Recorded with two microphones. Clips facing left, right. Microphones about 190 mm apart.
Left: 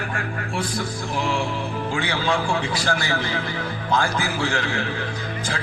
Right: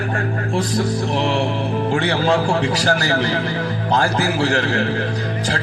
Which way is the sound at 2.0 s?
40° right (ahead or behind).